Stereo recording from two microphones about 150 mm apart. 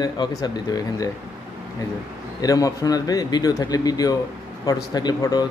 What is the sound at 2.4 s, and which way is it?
A man's voice, 25° left (ahead or behind).